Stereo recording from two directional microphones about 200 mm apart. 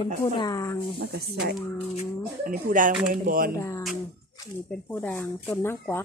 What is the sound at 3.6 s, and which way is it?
Speech, 15° left (ahead or behind).